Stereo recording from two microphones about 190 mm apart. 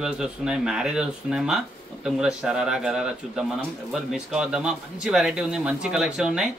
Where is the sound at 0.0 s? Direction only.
5° right (ahead or behind).